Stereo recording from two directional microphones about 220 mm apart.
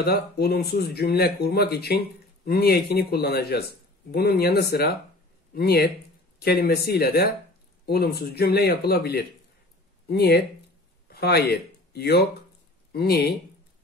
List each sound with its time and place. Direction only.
0.0 s speech: 45° left (ahead or behind)